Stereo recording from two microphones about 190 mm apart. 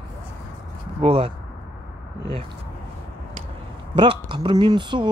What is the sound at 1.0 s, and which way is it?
Speech, 30° right (ahead or behind).